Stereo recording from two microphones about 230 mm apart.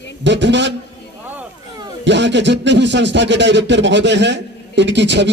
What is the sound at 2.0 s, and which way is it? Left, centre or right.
Speech, right.